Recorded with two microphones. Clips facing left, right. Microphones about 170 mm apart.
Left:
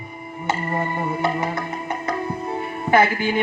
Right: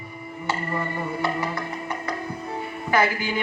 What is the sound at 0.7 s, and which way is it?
Music, 55° left (ahead or behind).